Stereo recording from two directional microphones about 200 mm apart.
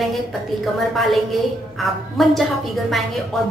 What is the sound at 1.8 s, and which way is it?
Speech, centre (ahead or behind).